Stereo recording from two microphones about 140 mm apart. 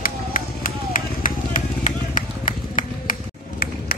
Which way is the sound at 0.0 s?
90° left.